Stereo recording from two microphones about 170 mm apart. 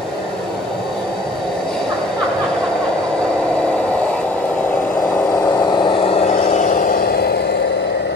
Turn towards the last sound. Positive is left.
turn(degrees=75)  # may be behind; listen again after turning